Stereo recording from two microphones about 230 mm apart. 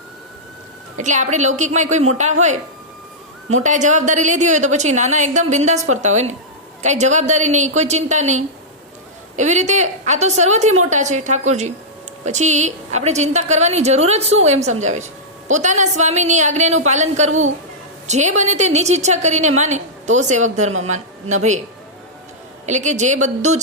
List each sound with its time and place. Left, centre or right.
0.9 s a woman's voice: right
22.6 s a woman's voice: right